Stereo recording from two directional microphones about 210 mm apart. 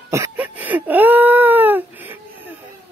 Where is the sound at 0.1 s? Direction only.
10° right (ahead or behind).